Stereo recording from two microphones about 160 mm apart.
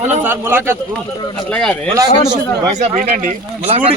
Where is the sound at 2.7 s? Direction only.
50° right (ahead or behind).